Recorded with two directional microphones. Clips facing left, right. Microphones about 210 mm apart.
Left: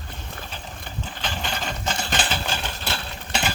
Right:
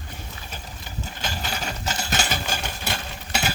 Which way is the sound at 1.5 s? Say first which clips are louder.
Left 1 dB; 10° right (ahead or behind).